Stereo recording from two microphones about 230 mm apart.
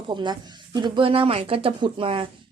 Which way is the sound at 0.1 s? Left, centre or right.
Centre.